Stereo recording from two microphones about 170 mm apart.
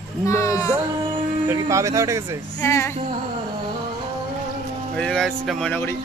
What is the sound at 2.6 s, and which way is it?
Speech, 15° left (ahead or behind).